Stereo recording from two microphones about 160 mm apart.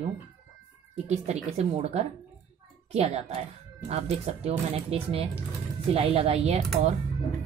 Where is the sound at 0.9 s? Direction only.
45° right (ahead or behind).